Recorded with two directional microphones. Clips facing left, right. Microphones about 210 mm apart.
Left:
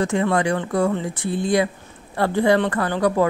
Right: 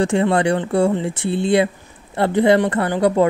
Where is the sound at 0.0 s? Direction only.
30° right (ahead or behind).